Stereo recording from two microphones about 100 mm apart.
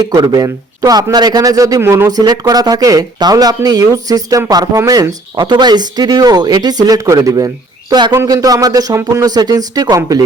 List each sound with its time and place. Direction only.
0.0 s a man's voice: 40° right (ahead or behind)
8.1 s a man's voice: 30° right (ahead or behind)
9.3 s a man's voice: 40° right (ahead or behind)